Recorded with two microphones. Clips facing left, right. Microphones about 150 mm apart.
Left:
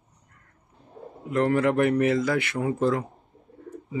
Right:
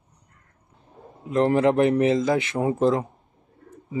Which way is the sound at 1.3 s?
25° right (ahead or behind).